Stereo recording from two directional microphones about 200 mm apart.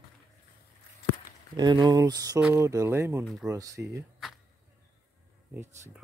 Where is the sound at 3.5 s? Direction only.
15° right (ahead or behind).